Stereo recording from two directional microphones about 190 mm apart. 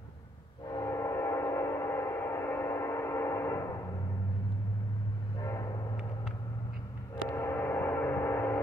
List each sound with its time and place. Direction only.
0.7 s train: 15° left (ahead or behind)
5.4 s train: 20° left (ahead or behind)
7.2 s gong: 15° left (ahead or behind)